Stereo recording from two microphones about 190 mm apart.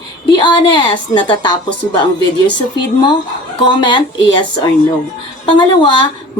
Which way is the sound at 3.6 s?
25° left (ahead or behind).